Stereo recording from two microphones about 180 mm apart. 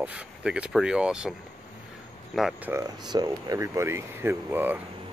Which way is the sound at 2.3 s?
Centre (ahead or behind).